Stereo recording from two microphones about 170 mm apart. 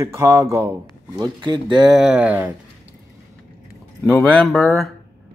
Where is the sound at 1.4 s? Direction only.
25° right (ahead or behind).